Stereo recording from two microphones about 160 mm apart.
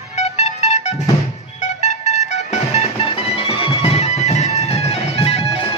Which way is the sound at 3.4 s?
35° left (ahead or behind).